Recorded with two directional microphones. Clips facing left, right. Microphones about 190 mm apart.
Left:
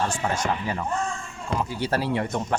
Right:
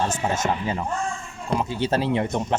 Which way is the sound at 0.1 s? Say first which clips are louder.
Right 2 dB; 20° right (ahead or behind).